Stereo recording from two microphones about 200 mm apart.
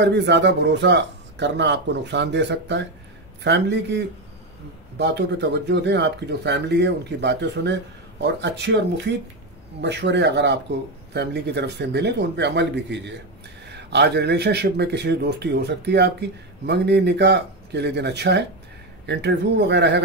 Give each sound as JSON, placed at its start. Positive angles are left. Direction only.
{"t": 0.0, "sound": "speech", "side_deg": -60}